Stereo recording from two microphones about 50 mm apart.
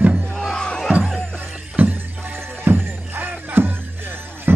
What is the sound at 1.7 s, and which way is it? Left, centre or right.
Music, right.